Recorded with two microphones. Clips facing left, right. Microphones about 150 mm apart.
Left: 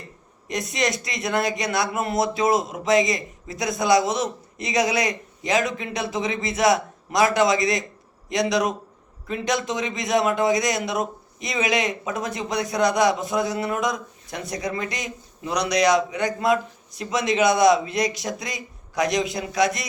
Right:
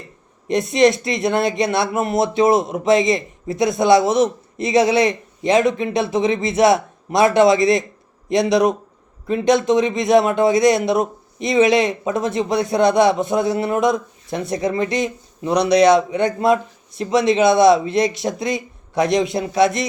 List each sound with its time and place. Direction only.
0.4 s a man's voice: 25° right (ahead or behind)